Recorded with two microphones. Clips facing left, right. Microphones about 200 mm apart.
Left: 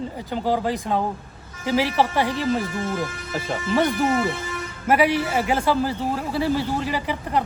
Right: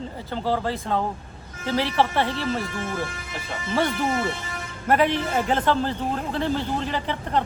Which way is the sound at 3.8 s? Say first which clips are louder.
Left 3 dB; 15° left (ahead or behind).